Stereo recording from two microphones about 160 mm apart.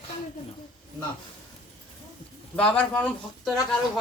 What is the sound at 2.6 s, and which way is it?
Speech, 10° left (ahead or behind).